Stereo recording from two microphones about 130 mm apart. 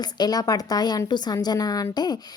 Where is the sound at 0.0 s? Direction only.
30° left (ahead or behind).